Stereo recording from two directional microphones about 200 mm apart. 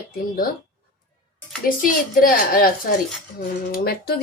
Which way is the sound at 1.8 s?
45° left (ahead or behind).